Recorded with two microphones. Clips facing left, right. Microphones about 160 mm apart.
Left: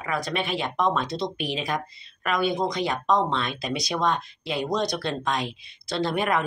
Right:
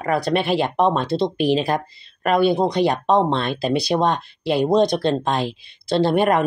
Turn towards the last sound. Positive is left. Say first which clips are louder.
# right 8 dB
turn(degrees=-30)  # may be behind; listen again after turning